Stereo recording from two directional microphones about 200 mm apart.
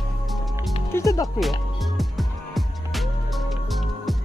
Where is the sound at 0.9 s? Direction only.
15° left (ahead or behind).